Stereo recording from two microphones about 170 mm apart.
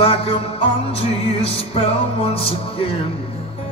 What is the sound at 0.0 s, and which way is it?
Music, 35° left (ahead or behind).